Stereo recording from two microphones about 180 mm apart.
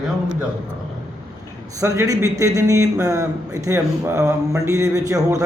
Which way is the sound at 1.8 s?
15° right (ahead or behind).